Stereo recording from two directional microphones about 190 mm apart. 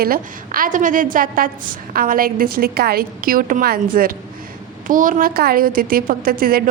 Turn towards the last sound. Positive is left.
turn(degrees=-50)  # may be behind; listen again after turning